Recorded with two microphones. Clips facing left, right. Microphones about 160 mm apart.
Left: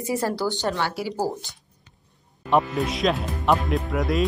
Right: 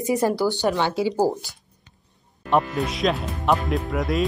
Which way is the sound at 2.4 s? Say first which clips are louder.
Even; centre (ahead or behind).